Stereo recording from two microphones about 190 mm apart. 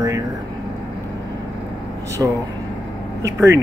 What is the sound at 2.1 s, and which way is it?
Speech, 15° right (ahead or behind).